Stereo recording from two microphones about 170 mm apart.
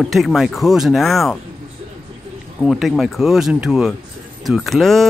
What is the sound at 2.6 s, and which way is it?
Speech, centre (ahead or behind).